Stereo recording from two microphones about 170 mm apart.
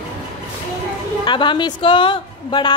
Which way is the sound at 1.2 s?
30° left (ahead or behind).